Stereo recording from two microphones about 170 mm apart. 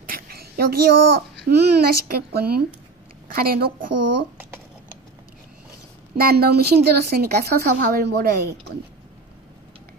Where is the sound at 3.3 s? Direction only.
60° right (ahead or behind).